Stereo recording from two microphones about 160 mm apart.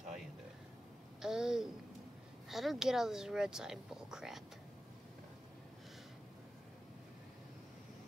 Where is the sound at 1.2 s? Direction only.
5° right (ahead or behind).